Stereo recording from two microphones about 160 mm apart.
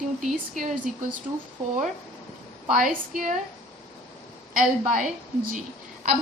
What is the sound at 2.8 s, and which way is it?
Speech, 55° right (ahead or behind).